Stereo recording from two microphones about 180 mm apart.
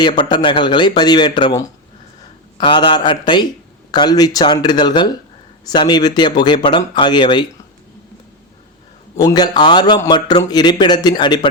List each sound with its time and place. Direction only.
0.0 s a man's voice: 25° left (ahead or behind)
9.1 s a man's voice: 20° left (ahead or behind)